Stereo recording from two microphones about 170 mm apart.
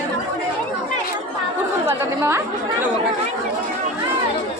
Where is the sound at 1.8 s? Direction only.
15° right (ahead or behind).